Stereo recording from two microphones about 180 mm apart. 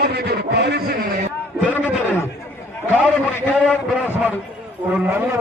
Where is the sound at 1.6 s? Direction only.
10° left (ahead or behind).